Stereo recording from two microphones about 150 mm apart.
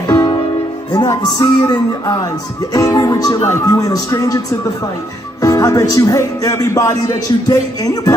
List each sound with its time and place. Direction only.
0.1 s music: 30° left (ahead or behind)
0.9 s speech: 25° left (ahead or behind)